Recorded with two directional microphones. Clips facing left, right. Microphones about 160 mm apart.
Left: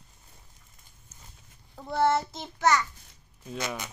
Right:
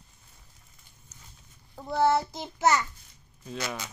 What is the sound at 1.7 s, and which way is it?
Child singing, 5° right (ahead or behind).